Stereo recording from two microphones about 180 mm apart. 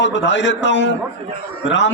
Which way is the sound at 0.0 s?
85° left.